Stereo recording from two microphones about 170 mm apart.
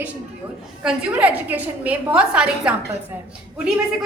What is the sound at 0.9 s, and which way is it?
A woman's voice, 10° right (ahead or behind).